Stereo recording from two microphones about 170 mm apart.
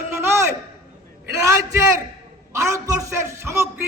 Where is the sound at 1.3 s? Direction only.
15° right (ahead or behind).